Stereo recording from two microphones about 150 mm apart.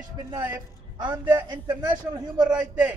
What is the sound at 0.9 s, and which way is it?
Speech, 30° right (ahead or behind).